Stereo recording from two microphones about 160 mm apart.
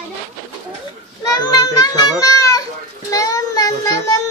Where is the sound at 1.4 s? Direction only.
25° left (ahead or behind).